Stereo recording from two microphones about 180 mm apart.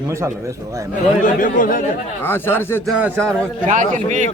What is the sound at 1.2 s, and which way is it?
Speech, 50° left (ahead or behind).